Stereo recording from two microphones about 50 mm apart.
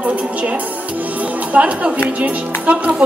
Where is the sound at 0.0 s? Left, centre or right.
Right.